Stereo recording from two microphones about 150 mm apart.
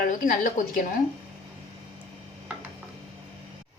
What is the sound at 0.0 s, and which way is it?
Speech, 65° left (ahead or behind).